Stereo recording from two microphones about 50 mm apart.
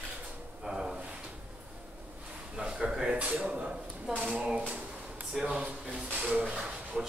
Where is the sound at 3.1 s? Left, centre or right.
Right.